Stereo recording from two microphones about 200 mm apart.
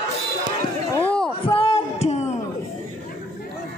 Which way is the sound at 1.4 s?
30° left (ahead or behind).